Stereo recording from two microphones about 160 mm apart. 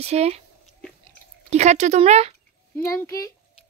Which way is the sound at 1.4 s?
45° right (ahead or behind).